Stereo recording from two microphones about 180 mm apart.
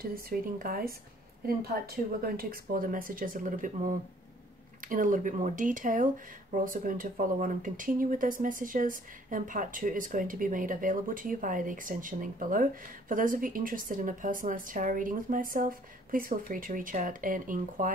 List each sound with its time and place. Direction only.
0.0 s speech: 55° right (ahead or behind)